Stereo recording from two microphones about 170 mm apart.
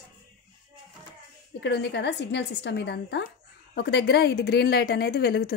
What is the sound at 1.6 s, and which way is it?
A woman's voice, 90° left.